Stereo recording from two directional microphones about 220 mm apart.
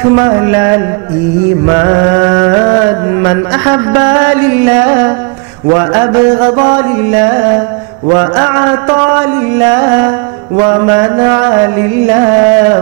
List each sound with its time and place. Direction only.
0.1 s music: 20° right (ahead or behind)
1.7 s mantra: 20° right (ahead or behind)